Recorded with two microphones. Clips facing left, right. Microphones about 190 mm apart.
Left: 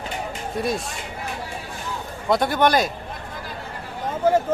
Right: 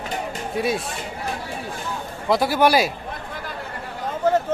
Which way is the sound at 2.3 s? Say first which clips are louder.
Right 1 dB; 5° right (ahead or behind).